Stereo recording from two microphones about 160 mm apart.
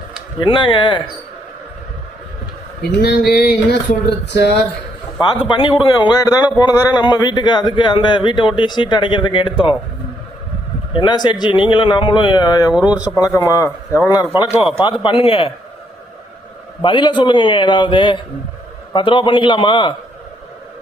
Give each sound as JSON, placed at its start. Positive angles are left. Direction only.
{"t": 0.3, "sound": "speech", "side_deg": 30}
{"t": 3.0, "sound": "a sound", "side_deg": 80}
{"t": 5.3, "sound": "speech", "side_deg": 30}
{"t": 10.9, "sound": "speech", "side_deg": 30}
{"t": 12.9, "sound": "speech", "side_deg": -5}
{"t": 13.1, "sound": "speech", "side_deg": 20}
{"t": 16.8, "sound": "speech", "side_deg": 30}